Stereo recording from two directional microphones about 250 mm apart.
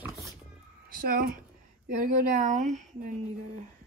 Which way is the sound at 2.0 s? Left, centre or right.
Right.